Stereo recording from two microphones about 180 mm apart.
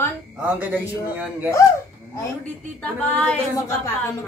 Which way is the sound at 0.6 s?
10° right (ahead or behind).